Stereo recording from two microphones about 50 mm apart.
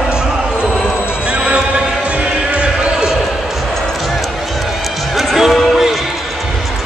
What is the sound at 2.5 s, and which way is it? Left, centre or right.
Basketball bounce, right.